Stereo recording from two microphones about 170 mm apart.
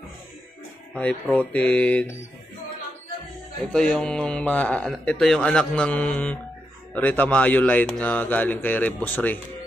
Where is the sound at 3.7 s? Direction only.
5° left (ahead or behind).